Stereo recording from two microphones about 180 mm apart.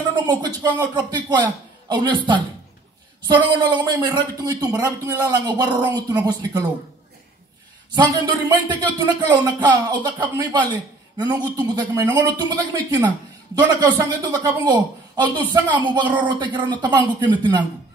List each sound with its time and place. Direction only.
0.1 s speech: 25° right (ahead or behind)
7.9 s speech: 25° right (ahead or behind)